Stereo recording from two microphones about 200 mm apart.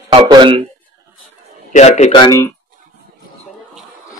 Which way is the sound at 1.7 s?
35° left (ahead or behind).